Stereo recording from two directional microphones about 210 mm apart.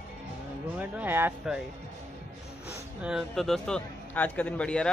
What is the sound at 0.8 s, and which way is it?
Speech, 10° right (ahead or behind).